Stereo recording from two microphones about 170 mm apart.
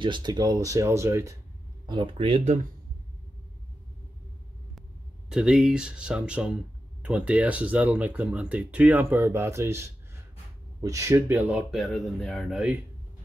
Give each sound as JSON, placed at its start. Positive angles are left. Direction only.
{"t": 0.0, "sound": "speech", "side_deg": -25}
{"t": 1.9, "sound": "speech", "side_deg": -30}
{"t": 5.3, "sound": "speech", "side_deg": -5}